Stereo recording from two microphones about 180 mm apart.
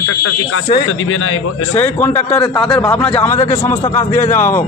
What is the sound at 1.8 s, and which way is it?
A man's voice, 10° left (ahead or behind).